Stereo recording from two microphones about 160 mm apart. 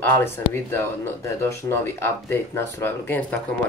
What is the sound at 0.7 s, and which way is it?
Speech, 15° left (ahead or behind).